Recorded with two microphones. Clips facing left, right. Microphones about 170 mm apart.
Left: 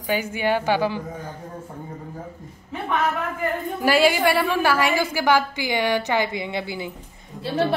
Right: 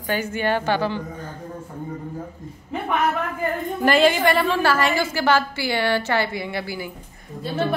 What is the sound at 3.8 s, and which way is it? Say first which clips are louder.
A woman's voice: right 1 dB; 10° left (ahead or behind).